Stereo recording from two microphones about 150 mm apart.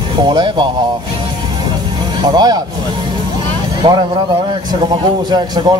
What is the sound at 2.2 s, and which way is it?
Speech, 25° right (ahead or behind).